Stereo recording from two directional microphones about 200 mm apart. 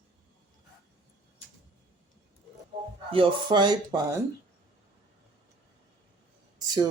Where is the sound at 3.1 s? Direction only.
25° right (ahead or behind).